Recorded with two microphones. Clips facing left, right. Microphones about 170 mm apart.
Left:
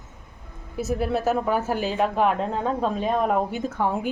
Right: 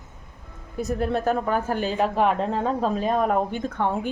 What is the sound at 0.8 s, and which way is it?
Speech, 5° left (ahead or behind).